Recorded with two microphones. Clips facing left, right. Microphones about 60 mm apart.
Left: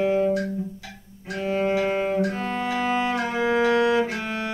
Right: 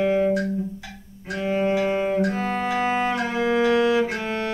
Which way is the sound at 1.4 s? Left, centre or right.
Centre.